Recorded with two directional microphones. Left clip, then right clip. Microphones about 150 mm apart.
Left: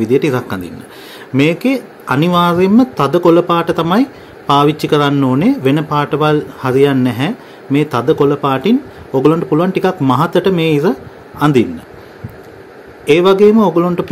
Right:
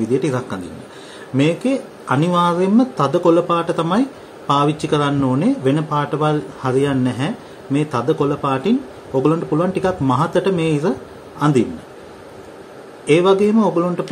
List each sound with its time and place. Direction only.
0.0 s speech: 70° left (ahead or behind)
13.0 s speech: 65° left (ahead or behind)